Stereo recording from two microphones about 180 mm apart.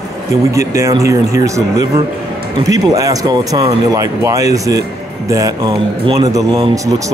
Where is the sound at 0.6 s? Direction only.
15° right (ahead or behind).